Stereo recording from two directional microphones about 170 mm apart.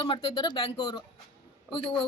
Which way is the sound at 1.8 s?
5° left (ahead or behind).